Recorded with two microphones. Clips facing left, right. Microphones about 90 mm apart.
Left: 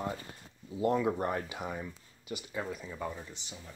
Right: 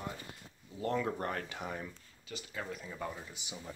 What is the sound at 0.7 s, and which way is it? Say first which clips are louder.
Speech: left 5 dB; 15° left (ahead or behind).